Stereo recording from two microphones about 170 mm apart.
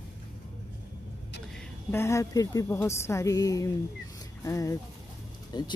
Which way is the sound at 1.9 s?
15° left (ahead or behind).